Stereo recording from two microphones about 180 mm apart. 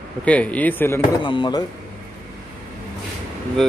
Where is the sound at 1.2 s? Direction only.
25° left (ahead or behind).